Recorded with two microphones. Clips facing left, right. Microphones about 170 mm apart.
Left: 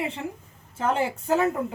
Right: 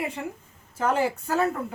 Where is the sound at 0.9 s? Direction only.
25° left (ahead or behind).